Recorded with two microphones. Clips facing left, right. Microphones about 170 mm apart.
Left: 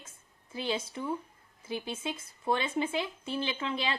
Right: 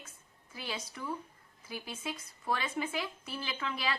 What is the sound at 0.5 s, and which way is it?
Speech, 25° left (ahead or behind).